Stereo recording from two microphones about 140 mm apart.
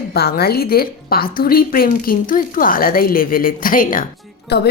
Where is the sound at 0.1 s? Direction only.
90° left.